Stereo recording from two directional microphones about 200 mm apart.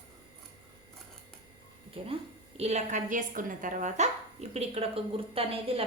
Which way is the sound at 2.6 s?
35° right (ahead or behind).